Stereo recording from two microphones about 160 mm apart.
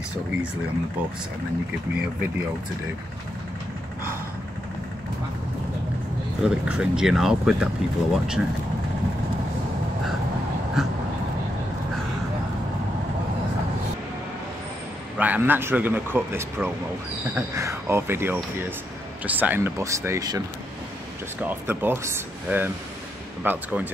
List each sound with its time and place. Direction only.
6.4 s speech: 5° right (ahead or behind)
10.8 s speech: centre (ahead or behind)
15.1 s a man's voice: 10° right (ahead or behind)